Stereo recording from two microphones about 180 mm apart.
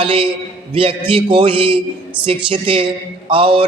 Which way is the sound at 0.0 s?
30° right (ahead or behind).